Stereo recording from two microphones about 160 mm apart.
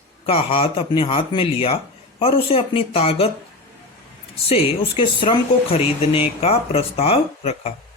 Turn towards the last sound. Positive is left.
turn(degrees=40)  # may be behind; listen again after turning